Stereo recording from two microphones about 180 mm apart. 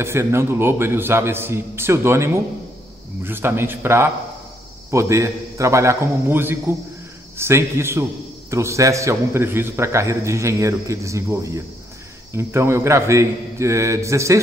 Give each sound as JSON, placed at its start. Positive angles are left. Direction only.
{"t": 0.0, "sound": "a man's voice", "side_deg": -15}